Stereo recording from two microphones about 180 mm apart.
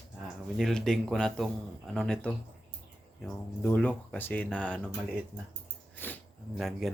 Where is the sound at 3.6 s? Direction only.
5° left (ahead or behind).